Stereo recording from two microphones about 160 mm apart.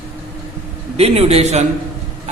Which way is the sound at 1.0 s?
40° right (ahead or behind).